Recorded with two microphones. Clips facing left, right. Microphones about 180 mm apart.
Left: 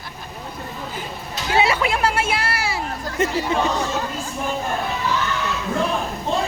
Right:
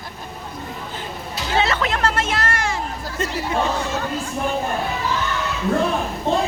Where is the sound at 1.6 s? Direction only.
10° left (ahead or behind).